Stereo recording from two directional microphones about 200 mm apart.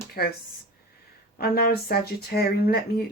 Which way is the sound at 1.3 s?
50° left (ahead or behind).